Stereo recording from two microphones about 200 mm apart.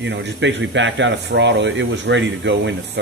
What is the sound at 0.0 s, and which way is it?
Speech, 60° right (ahead or behind).